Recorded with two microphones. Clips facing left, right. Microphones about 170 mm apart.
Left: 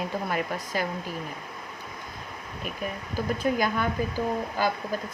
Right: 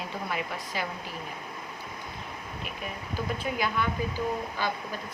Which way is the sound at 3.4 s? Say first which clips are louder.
Left 5 dB; 45° left (ahead or behind).